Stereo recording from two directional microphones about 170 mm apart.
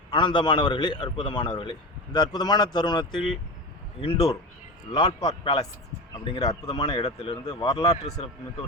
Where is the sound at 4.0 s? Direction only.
35° left (ahead or behind).